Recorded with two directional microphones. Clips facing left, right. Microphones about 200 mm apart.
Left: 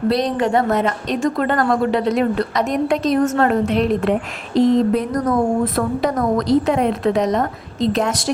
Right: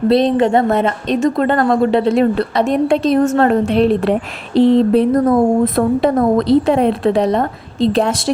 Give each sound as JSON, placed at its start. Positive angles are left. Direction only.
{"t": 0.1, "sound": "a woman's voice", "side_deg": -25}